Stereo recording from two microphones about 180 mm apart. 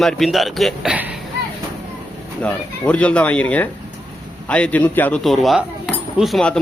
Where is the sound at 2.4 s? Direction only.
5° left (ahead or behind).